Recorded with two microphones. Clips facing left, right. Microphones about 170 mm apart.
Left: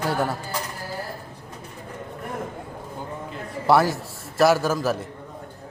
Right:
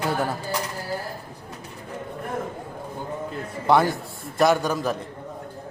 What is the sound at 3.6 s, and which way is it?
A man's voice, 5° left (ahead or behind).